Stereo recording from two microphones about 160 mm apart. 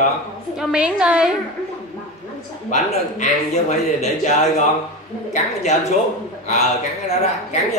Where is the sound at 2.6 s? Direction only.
45° left (ahead or behind).